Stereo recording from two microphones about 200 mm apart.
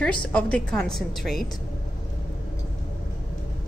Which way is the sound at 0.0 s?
5° left (ahead or behind).